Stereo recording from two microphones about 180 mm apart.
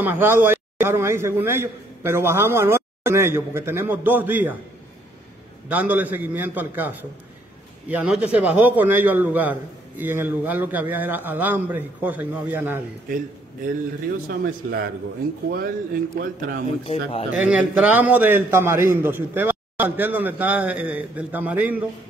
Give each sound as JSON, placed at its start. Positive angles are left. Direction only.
{"t": 0.0, "sound": "a man's voice", "side_deg": -10}
{"t": 5.7, "sound": "a man's voice", "side_deg": -10}
{"t": 14.2, "sound": "speech", "side_deg": -55}
{"t": 16.8, "sound": "speech", "side_deg": 35}
{"t": 17.4, "sound": "a man's voice", "side_deg": -5}